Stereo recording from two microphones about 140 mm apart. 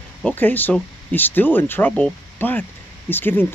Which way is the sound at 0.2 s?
15° left (ahead or behind).